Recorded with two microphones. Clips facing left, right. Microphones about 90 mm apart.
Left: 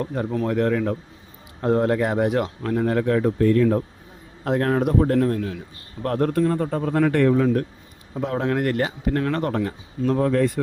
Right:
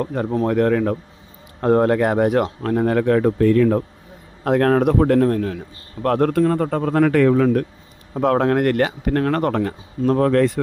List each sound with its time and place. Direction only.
0.0 s speech: 65° right (ahead or behind)
0.3 s speech: 45° right (ahead or behind); by 3.8 s 90° right
4.4 s speech: 65° right (ahead or behind)
6.0 s speech: 90° right
8.1 s speech: 65° right (ahead or behind)
10.1 s speech: 80° right